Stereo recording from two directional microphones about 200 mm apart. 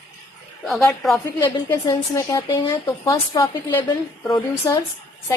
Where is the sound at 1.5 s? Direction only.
15° left (ahead or behind).